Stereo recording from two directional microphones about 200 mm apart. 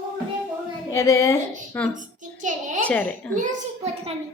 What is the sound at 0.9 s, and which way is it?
A woman's voice, 15° left (ahead or behind).